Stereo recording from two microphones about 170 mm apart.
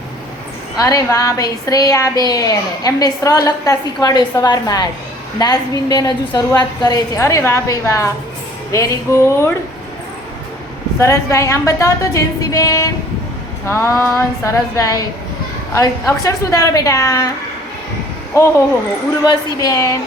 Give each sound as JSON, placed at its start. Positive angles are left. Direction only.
{"t": 0.8, "sound": "a woman's voice", "side_deg": 20}
{"t": 11.0, "sound": "a woman's voice", "side_deg": 20}
{"t": 19.2, "sound": "a woman's voice", "side_deg": 20}